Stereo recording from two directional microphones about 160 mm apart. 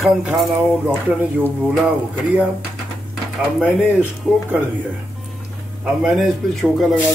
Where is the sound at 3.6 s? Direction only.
10° right (ahead or behind).